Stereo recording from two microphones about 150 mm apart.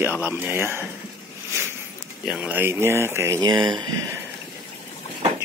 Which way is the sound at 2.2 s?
5° right (ahead or behind).